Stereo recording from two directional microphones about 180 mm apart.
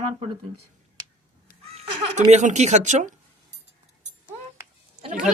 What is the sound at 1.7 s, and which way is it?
Speech, 35° right (ahead or behind).